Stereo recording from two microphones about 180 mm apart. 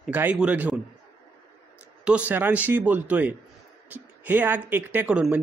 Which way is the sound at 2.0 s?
10° right (ahead or behind).